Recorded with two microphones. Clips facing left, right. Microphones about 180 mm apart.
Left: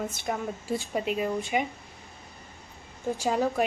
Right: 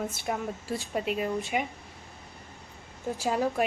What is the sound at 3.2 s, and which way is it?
Speech, 5° right (ahead or behind).